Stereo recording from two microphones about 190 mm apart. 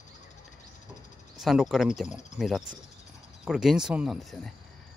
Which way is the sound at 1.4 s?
Centre (ahead or behind).